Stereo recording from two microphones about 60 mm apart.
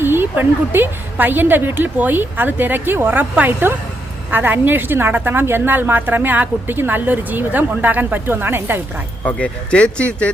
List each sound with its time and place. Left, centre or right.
0.0 s a woman's voice: right
9.2 s speech: left